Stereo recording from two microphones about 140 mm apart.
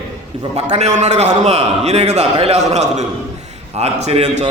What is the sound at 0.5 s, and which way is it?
A man's voice, 50° right (ahead or behind).